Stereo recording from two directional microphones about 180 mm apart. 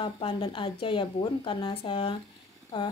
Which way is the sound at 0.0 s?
25° left (ahead or behind).